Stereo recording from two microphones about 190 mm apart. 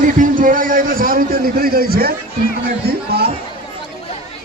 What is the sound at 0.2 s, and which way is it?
A man's voice, 45° right (ahead or behind).